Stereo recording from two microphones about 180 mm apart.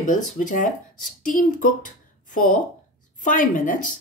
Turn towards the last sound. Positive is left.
turn(degrees=45)  # may be behind; listen again after turning